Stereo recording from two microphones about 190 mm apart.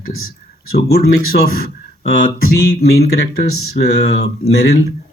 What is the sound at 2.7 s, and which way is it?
Speech, 55° left (ahead or behind).